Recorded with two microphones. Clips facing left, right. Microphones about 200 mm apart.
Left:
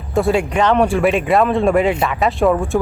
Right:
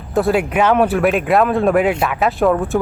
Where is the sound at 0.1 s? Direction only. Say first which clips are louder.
Even; centre (ahead or behind).